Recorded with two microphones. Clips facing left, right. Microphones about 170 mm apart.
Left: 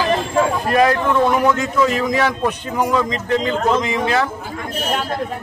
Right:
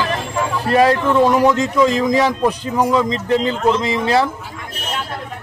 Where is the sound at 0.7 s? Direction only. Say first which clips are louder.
Right 6 dB; 30° right (ahead or behind).